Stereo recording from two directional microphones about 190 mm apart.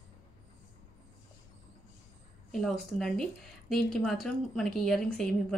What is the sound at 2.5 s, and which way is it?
Speech, centre (ahead or behind).